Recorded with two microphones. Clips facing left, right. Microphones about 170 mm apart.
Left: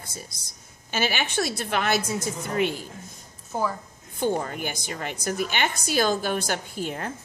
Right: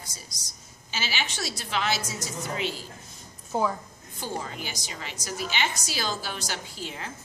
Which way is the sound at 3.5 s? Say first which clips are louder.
Right 1 dB; 15° right (ahead or behind).